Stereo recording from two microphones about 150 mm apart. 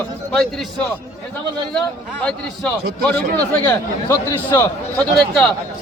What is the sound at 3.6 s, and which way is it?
A man's voice, 15° left (ahead or behind).